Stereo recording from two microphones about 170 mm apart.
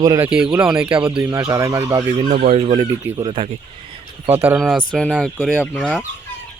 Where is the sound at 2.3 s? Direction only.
50° right (ahead or behind).